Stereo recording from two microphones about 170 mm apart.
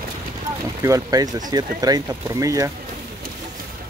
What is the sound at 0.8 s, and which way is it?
Speech, 20° right (ahead or behind).